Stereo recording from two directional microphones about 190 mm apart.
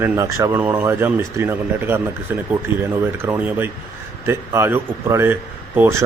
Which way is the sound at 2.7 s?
25° left (ahead or behind).